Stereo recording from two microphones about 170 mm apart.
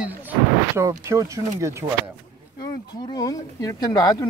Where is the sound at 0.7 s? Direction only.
15° right (ahead or behind).